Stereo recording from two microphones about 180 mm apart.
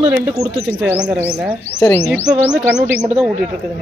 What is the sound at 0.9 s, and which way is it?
Speech, 5° right (ahead or behind).